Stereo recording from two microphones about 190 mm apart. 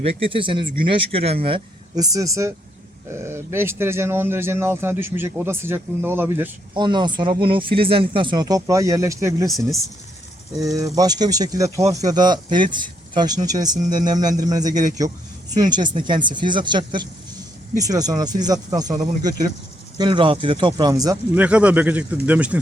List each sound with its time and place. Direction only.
0.0 s speech: 30° right (ahead or behind); by 6.5 s 10° right (ahead or behind)
6.7 s speech: 25° right (ahead or behind)
10.8 s speech: 20° right (ahead or behind)
21.3 s speech: 5° right (ahead or behind)